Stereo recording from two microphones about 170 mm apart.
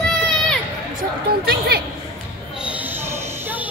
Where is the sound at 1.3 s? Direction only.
65° right (ahead or behind).